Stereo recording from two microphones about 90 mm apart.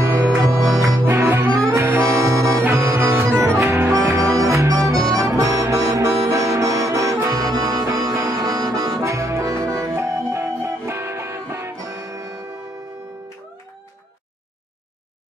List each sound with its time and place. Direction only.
0.0 s music: 40° right (ahead or behind)
0.5 s music: centre (ahead or behind)
1.0 s music: 35° right (ahead or behind)
6.2 s accordion: 40° right (ahead or behind)
9.0 s music: 35° right (ahead or behind)
11.7 s music: 40° right (ahead or behind)